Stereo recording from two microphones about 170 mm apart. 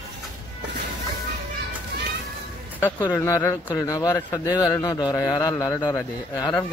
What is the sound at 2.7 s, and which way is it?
A man's voice, 10° left (ahead or behind).